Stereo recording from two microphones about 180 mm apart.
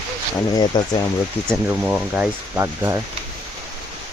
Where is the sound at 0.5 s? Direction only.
25° left (ahead or behind).